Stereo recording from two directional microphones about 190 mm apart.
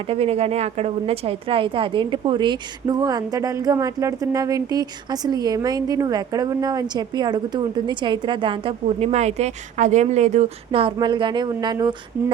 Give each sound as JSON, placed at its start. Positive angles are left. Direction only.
{"t": 0.1, "sound": "a woman's voice", "side_deg": -30}